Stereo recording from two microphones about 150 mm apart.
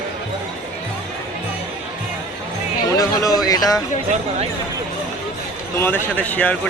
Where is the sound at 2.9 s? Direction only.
25° left (ahead or behind).